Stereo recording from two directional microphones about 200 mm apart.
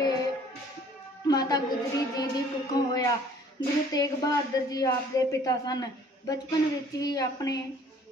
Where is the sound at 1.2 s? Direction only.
20° left (ahead or behind).